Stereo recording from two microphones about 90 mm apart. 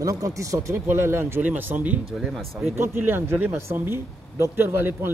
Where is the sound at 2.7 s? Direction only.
25° right (ahead or behind).